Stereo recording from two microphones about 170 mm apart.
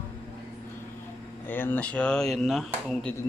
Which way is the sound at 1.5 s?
10° left (ahead or behind).